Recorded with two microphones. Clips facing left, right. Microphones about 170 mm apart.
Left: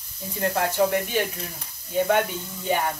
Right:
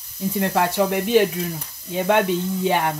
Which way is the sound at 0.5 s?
80° right.